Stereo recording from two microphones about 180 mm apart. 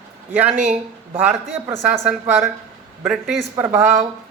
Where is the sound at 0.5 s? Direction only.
45° right (ahead or behind).